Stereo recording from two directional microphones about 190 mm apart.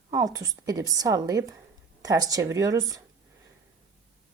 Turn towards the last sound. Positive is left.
turn(degrees=-20)  # may be behind; listen again after turning